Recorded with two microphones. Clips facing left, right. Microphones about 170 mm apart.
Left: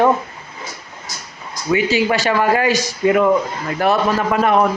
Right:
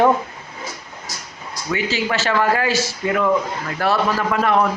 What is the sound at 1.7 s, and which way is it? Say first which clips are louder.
A man's voice: left 6 dB; 15° left (ahead or behind).